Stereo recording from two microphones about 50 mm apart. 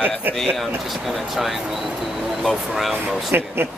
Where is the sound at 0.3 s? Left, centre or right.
Centre.